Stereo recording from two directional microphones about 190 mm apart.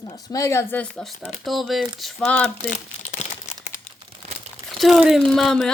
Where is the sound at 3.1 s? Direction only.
40° left (ahead or behind).